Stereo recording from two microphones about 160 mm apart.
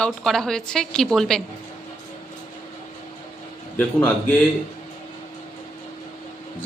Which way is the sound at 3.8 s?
10° left (ahead or behind).